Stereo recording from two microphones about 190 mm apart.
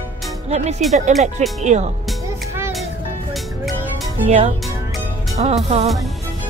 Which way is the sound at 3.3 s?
Centre (ahead or behind).